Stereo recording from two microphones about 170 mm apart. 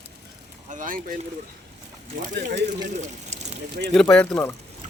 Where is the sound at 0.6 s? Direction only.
50° right (ahead or behind).